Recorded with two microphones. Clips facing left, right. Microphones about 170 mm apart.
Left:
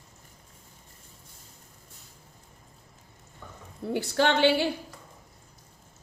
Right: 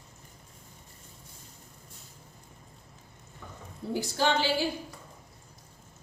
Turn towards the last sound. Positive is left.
turn(degrees=65)  # may be behind; listen again after turning